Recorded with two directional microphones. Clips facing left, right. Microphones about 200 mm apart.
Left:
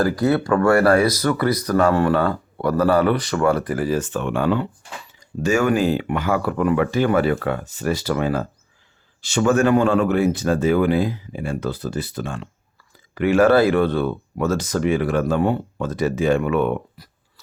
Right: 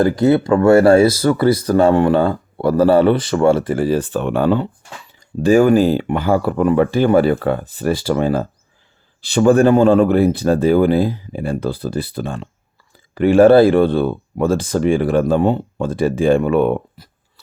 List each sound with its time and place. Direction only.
0.0 s speech: 20° right (ahead or behind)